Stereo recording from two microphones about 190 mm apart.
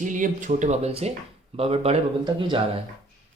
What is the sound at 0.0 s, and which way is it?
Speech, 45° right (ahead or behind).